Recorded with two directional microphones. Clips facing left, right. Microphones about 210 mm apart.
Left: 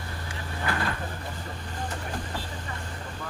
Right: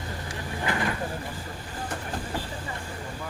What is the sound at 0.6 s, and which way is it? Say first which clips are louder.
Vehicle: right 1 dB; 20° right (ahead or behind).